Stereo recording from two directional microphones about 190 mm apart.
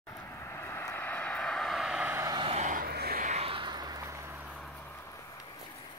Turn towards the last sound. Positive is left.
turn(degrees=-5)  # may be behind; listen again after turning